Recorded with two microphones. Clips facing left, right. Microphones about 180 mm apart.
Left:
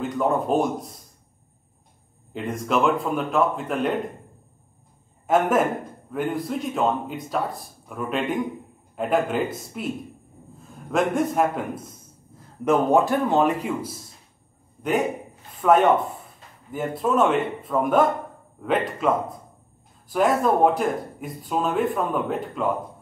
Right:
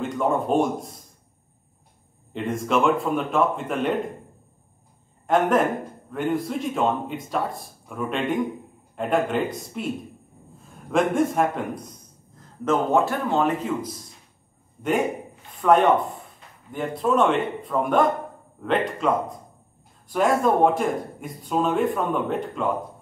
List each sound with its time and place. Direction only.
0.0 s speech: centre (ahead or behind)
2.3 s a man's voice: centre (ahead or behind)
5.2 s a man's voice: 5° left (ahead or behind)
12.4 s a man's voice: 15° left (ahead or behind)
14.8 s a man's voice: centre (ahead or behind)